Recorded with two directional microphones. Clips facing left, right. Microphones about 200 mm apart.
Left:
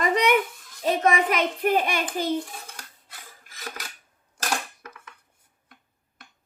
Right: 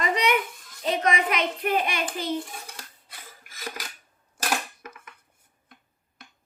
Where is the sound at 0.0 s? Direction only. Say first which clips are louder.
Left 3 dB; 50° left (ahead or behind).